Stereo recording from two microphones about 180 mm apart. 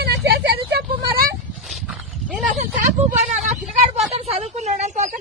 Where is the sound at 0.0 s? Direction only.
60° right (ahead or behind).